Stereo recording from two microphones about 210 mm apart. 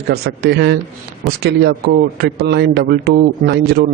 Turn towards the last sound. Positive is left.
turn(degrees=-50)  # may be behind; listen again after turning